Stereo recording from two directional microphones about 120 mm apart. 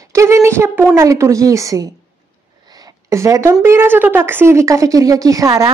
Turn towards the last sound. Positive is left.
turn(degrees=-30)  # may be behind; listen again after turning